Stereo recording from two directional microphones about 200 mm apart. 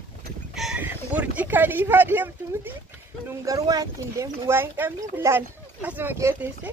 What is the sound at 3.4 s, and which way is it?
Speech, 15° right (ahead or behind).